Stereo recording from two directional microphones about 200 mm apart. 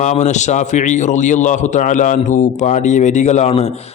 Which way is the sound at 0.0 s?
35° left (ahead or behind).